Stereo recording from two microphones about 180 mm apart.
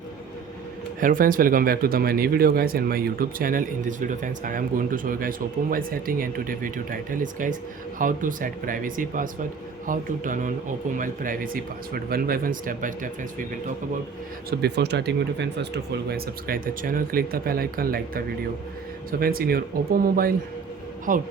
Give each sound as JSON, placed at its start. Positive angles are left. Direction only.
{"t": 0.9, "sound": "speech", "side_deg": -50}
{"t": 14.6, "sound": "speech", "side_deg": -65}
{"t": 19.2, "sound": "speech", "side_deg": -55}